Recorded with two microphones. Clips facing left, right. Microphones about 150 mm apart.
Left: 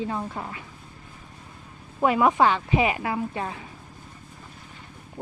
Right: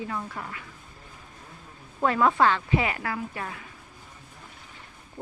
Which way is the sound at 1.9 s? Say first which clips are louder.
Left 2 dB; 15° left (ahead or behind).